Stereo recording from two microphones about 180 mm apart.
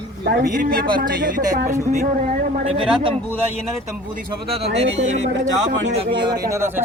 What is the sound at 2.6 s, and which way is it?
Speech, 35° right (ahead or behind).